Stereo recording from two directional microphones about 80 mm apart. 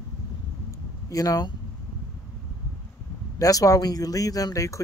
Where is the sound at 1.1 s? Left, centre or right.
Left.